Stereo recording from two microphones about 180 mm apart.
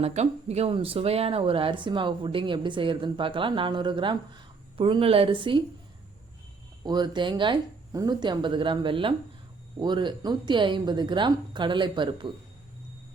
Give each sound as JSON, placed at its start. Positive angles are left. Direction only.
{"t": 0.0, "sound": "speech", "side_deg": -35}
{"t": 6.8, "sound": "speech", "side_deg": -25}